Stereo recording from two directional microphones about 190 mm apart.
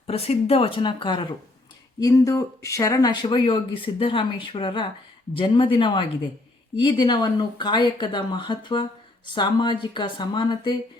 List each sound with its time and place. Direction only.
0.1 s speech: 30° left (ahead or behind)